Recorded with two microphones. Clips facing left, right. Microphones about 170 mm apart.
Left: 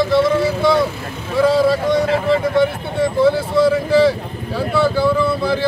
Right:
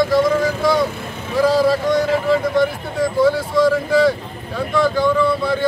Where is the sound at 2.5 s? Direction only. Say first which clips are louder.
Left 1 dB; centre (ahead or behind).